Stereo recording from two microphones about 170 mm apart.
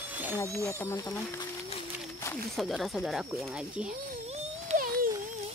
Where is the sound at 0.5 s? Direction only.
15° left (ahead or behind).